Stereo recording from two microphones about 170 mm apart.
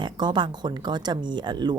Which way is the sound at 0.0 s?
25° right (ahead or behind).